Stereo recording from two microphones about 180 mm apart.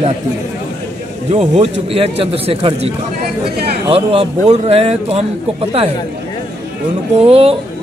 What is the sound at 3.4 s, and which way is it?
Speech, 60° right (ahead or behind).